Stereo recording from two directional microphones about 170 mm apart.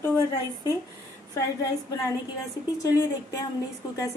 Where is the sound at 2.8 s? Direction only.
20° left (ahead or behind).